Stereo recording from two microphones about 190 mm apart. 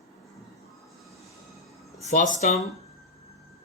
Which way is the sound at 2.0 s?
40° left (ahead or behind).